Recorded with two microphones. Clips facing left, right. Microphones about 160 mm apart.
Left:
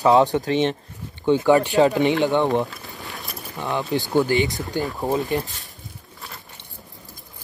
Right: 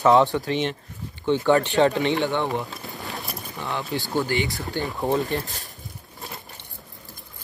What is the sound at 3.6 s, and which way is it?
Speech, 20° left (ahead or behind).